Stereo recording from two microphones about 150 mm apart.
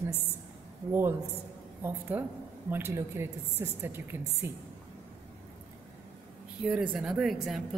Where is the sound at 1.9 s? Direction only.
15° right (ahead or behind).